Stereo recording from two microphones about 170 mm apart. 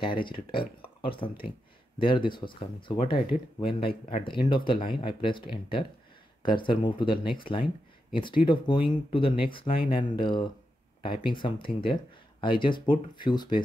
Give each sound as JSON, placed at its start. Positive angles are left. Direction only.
{"t": 0.0, "sound": "speech", "side_deg": 30}